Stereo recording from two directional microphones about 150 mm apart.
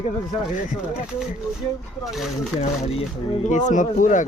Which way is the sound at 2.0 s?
Centre (ahead or behind).